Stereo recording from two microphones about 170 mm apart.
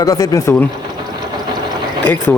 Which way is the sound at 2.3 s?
10° left (ahead or behind).